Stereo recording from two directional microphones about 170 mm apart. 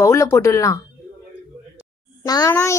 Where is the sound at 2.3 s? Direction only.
20° left (ahead or behind).